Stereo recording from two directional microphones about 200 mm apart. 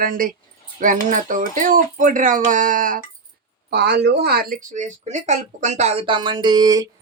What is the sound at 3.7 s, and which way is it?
Speech, 55° right (ahead or behind).